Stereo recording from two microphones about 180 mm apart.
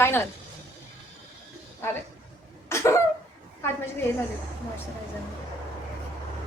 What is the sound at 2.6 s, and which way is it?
Cough, 15° left (ahead or behind).